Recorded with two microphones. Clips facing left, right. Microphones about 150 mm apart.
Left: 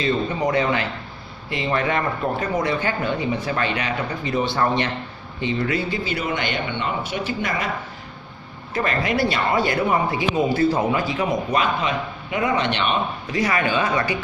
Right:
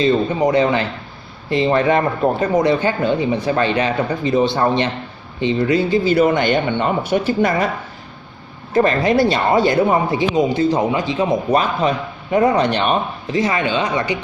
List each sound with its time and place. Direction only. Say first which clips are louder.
0.0 s speech: right 6 dB; 25° right (ahead or behind)
6.0 s speech: right 11 dB; 40° right (ahead or behind)
8.7 s speech: right 8 dB; 30° right (ahead or behind)
11.5 s a man's voice: right 5 dB; 40° right (ahead or behind)
13.3 s speech: right 4 dB; 25° right (ahead or behind)